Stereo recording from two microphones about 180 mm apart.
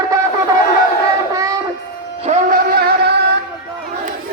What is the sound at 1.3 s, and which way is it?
Child singing, 20° right (ahead or behind).